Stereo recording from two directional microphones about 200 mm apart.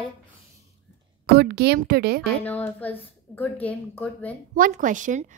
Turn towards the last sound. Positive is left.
turn(degrees=-40)  # may be behind; listen again after turning